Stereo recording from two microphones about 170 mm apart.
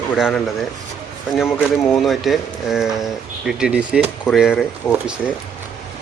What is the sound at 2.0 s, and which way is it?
Speech, centre (ahead or behind).